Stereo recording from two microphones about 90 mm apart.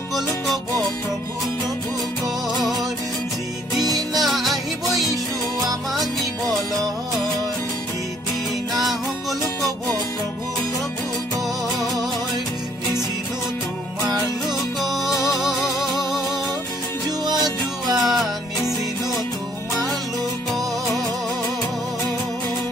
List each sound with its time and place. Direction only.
2.2 s music: centre (ahead or behind)
4.2 s music: centre (ahead or behind)
11.8 s music: centre (ahead or behind)
14.0 s music: 5° right (ahead or behind)
17.2 s music: 50° right (ahead or behind)
18.0 s music: centre (ahead or behind)